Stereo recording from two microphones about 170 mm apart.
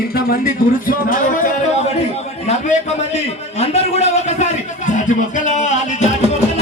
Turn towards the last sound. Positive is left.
turn(degrees=45)  # may be behind; listen again after turning